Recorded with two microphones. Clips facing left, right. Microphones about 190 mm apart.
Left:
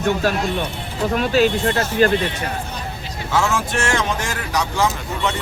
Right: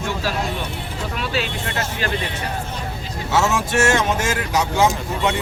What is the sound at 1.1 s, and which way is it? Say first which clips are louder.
Speech: left 9 dB; 45° left (ahead or behind).